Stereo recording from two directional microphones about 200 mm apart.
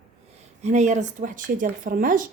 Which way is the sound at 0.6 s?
35° right (ahead or behind).